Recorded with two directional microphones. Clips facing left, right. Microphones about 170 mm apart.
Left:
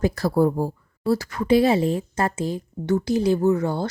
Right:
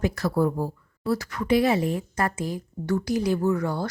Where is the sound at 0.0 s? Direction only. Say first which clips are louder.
Left 4 dB; 30° left (ahead or behind).